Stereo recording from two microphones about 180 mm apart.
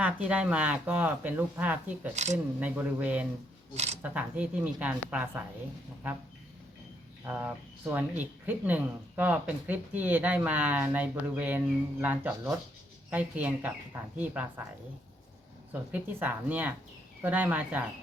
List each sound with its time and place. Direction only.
0.0 s speech: 5° right (ahead or behind)
2.1 s speech: 40° right (ahead or behind)
2.6 s speech: 10° right (ahead or behind)
7.3 s speech: 10° right (ahead or behind)
15.7 s speech: 10° right (ahead or behind)